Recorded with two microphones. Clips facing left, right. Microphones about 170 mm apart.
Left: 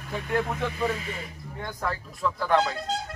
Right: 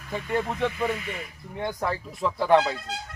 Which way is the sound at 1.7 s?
20° right (ahead or behind).